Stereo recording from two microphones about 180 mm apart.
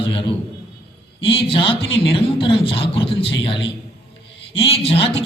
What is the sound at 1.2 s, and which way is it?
Speech, 30° left (ahead or behind).